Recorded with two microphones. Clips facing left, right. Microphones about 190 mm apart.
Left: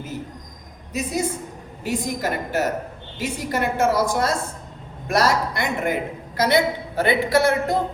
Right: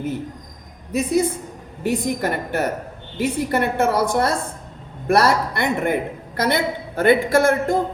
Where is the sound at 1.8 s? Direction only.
55° right (ahead or behind).